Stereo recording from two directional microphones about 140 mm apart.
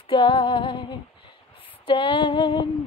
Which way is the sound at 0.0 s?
40° left (ahead or behind).